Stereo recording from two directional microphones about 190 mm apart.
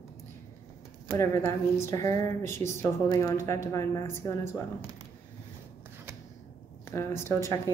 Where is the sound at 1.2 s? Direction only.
15° left (ahead or behind).